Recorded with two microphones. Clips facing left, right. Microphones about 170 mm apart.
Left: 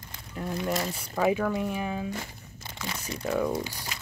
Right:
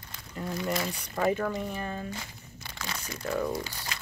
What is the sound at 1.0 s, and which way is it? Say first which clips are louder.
Speech: left 3 dB; 5° left (ahead or behind).